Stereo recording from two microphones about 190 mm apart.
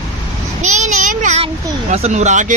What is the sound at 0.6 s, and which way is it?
A child's voice, 40° right (ahead or behind).